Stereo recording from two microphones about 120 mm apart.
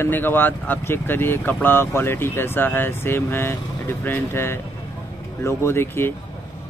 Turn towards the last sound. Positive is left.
turn(degrees=20)  # may be behind; listen again after turning